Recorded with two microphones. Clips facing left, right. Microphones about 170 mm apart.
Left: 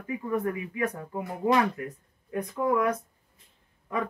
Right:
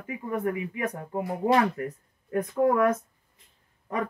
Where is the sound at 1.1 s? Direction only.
30° right (ahead or behind); by 2.9 s 50° right (ahead or behind).